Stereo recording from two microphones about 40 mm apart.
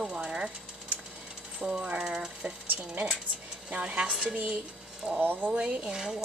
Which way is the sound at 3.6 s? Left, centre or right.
Right.